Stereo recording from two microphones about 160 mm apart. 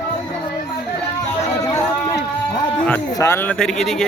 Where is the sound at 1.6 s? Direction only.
20° left (ahead or behind).